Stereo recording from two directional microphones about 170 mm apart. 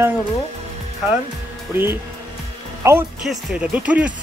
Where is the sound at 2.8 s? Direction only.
15° right (ahead or behind).